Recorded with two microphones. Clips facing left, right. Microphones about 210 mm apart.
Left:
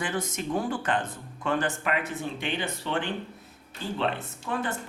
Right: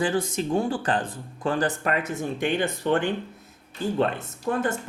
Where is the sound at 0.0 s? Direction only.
30° right (ahead or behind); by 3.1 s 50° right (ahead or behind).